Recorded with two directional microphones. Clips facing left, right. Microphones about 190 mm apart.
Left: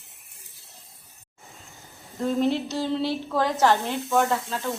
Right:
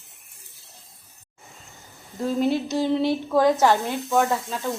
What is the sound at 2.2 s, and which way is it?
A woman's voice, 5° right (ahead or behind).